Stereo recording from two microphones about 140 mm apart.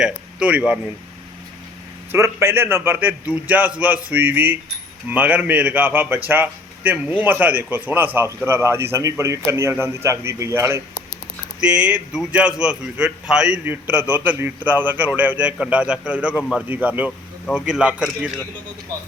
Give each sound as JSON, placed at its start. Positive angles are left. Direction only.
{"t": 0.0, "sound": "speech", "side_deg": -5}
{"t": 2.1, "sound": "a man's voice", "side_deg": -20}
{"t": 11.6, "sound": "a man's voice", "side_deg": -10}